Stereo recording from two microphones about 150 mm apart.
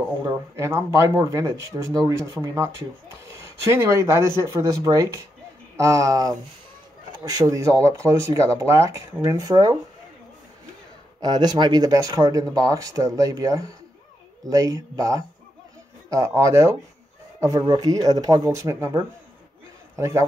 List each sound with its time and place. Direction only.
0.6 s speech: 20° right (ahead or behind)
11.1 s speech: 30° right (ahead or behind)